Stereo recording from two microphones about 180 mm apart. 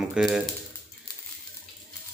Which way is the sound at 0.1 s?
5° right (ahead or behind).